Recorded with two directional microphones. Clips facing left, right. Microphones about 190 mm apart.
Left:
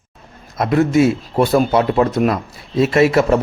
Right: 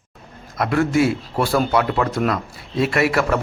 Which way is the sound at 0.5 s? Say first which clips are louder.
Left 4 dB; 20° left (ahead or behind).